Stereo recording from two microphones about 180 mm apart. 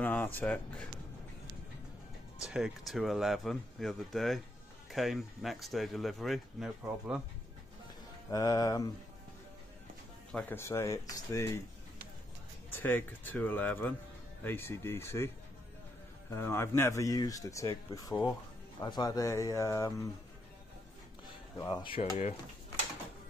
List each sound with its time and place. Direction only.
0.0 s speech: 10° left (ahead or behind)
2.5 s speech: centre (ahead or behind)
8.3 s speech: 20° left (ahead or behind)
10.3 s speech: 15° left (ahead or behind)
12.7 s speech: 10° left (ahead or behind)
21.5 s speech: 25° left (ahead or behind)